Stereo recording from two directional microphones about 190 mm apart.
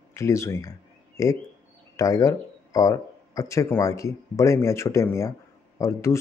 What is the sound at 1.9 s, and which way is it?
Speech, 15° left (ahead or behind).